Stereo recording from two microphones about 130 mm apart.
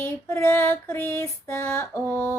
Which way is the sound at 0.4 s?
10° left (ahead or behind).